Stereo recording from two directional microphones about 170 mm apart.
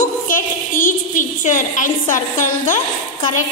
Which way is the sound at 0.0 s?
55° left (ahead or behind).